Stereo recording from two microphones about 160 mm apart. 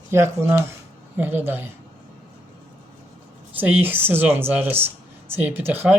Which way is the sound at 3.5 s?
10° right (ahead or behind).